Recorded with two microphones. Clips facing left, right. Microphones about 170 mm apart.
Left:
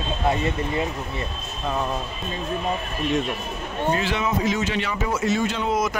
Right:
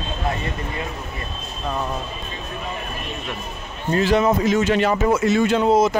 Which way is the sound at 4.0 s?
40° right (ahead or behind).